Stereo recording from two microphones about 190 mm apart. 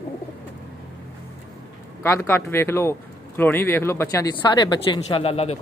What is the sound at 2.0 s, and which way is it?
Speech, 10° left (ahead or behind).